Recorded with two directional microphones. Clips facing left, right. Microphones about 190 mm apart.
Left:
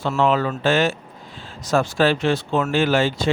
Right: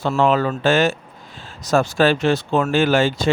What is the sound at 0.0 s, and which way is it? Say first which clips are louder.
Speech: right 2 dB; 45° right (ahead or behind).